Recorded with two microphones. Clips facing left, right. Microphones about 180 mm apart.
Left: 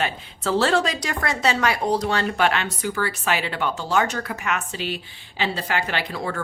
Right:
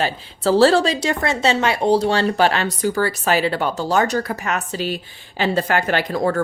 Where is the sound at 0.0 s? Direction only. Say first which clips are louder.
Right 6 dB; 35° right (ahead or behind).